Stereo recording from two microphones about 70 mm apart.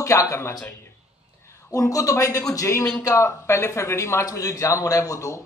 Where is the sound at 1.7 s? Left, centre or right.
Left.